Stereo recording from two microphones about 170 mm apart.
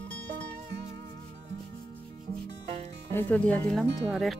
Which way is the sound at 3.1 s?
10° left (ahead or behind).